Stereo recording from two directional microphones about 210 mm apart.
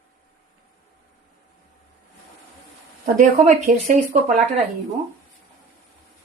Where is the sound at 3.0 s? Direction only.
35° right (ahead or behind).